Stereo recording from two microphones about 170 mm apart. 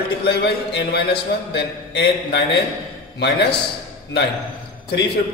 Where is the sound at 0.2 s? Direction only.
75° left (ahead or behind).